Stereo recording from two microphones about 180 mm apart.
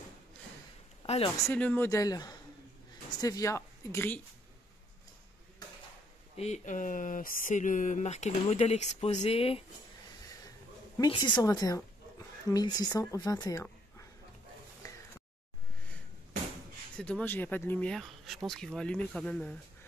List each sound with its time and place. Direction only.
1.0 s speech: 35° left (ahead or behind)
1.5 s speech: 10° left (ahead or behind)
6.3 s speech: 40° left (ahead or behind)
11.0 s a woman's voice: 25° left (ahead or behind)
16.9 s speech: 5° left (ahead or behind)